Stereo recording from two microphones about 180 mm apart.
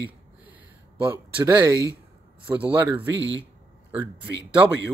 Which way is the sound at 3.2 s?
90° right.